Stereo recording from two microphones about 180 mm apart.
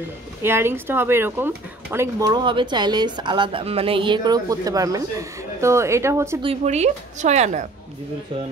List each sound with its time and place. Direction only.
0.4 s speech: 15° right (ahead or behind)
6.4 s a woman's voice: 35° right (ahead or behind)